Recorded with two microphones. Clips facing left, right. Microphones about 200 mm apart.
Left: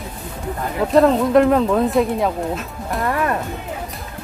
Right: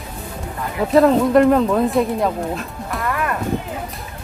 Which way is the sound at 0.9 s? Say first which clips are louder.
Right 1 dB; centre (ahead or behind).